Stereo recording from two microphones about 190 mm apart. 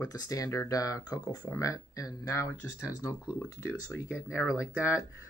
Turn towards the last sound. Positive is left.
turn(degrees=15)  # may be behind; listen again after turning